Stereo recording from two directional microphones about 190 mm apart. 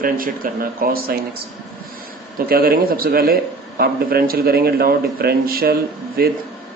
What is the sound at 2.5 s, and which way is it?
A man's voice, 55° right (ahead or behind).